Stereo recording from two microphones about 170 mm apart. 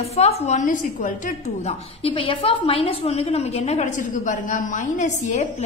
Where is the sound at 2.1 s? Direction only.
30° left (ahead or behind).